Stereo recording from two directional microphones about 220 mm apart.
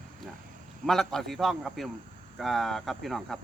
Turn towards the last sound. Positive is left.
turn(degrees=0)  # may be behind; listen again after turning